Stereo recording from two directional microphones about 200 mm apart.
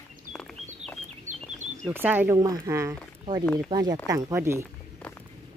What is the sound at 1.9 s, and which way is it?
Speech, 10° right (ahead or behind).